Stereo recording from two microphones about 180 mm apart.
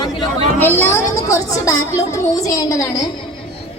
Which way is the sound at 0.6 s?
15° left (ahead or behind).